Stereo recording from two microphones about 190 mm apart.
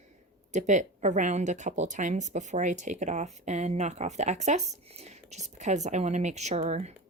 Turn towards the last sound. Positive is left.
turn(degrees=-35)  # may be behind; listen again after turning